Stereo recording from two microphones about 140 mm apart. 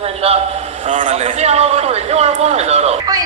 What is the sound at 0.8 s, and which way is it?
A man's voice, 60° right (ahead or behind).